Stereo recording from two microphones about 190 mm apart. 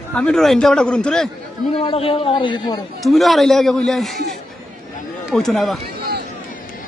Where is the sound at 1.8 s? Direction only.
30° left (ahead or behind).